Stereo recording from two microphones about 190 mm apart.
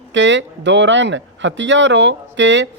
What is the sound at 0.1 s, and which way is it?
Speech, 70° right (ahead or behind).